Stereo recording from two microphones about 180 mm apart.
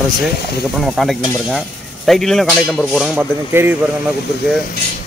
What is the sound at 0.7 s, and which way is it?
A man's voice, centre (ahead or behind).